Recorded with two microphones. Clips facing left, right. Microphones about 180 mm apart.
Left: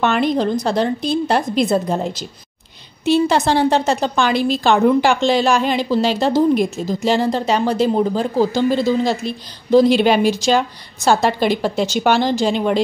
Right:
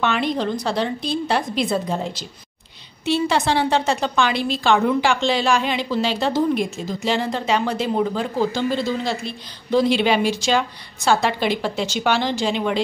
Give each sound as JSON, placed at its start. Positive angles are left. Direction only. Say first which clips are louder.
{"t": 0.0, "sound": "a woman's voice", "louder": "left 5 dB", "side_deg": 45}